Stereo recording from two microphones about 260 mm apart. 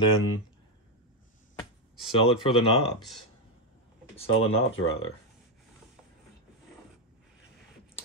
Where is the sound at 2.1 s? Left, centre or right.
Left.